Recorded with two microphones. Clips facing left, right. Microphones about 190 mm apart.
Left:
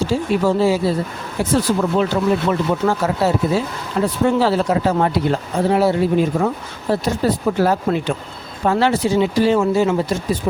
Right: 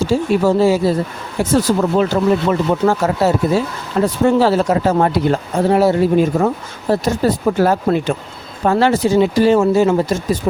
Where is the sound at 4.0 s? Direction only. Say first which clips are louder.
Right 3 dB; 45° right (ahead or behind).